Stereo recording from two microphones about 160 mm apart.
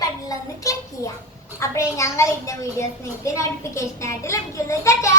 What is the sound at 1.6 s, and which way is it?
A woman's voice, 20° left (ahead or behind).